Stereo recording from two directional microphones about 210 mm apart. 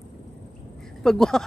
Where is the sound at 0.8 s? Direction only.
Centre (ahead or behind).